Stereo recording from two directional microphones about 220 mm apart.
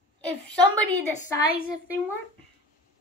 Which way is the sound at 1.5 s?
40° left (ahead or behind).